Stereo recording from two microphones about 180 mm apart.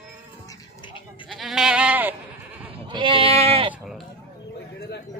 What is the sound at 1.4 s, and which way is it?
Goat, 5° right (ahead or behind).